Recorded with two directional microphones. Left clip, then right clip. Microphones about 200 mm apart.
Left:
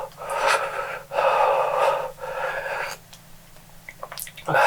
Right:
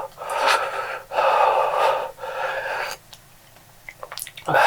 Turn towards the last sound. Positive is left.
turn(degrees=-40)  # may be behind; listen again after turning